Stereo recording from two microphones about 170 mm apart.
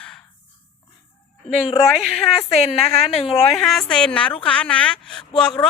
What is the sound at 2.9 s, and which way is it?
Speech, 35° left (ahead or behind).